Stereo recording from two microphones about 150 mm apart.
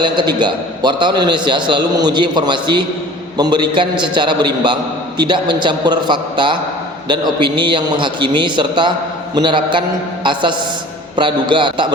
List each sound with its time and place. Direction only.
0.0 s a man's voice: 30° right (ahead or behind)
11.2 s a man's voice: 30° right (ahead or behind)